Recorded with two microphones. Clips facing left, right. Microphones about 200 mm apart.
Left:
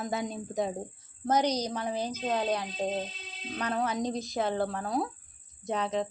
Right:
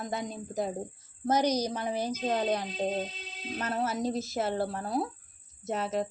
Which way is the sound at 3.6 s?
5° right (ahead or behind).